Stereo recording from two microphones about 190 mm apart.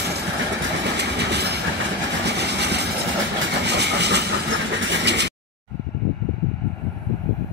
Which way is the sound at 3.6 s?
65° right (ahead or behind).